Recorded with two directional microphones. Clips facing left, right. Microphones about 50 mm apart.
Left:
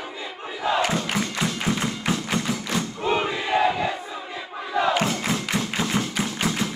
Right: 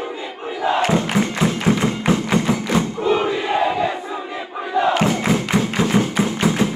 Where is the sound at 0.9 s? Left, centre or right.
Right.